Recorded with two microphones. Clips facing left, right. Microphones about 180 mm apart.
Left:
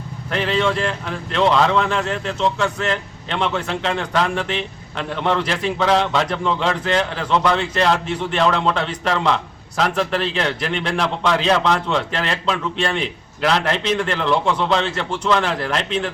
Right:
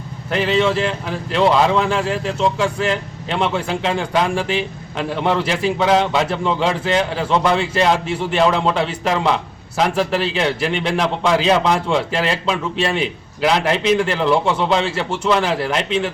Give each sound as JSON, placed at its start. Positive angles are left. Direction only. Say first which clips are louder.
{"t": 0.3, "sound": "a man's voice", "louder": "right 3 dB", "side_deg": -5}